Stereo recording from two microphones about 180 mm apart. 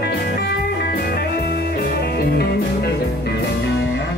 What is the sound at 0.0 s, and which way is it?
Music, 60° left (ahead or behind).